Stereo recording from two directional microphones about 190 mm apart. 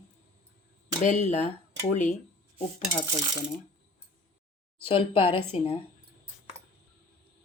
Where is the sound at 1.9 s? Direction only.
40° left (ahead or behind).